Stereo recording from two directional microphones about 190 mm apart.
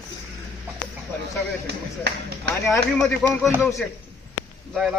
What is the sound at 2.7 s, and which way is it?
Speech, centre (ahead or behind).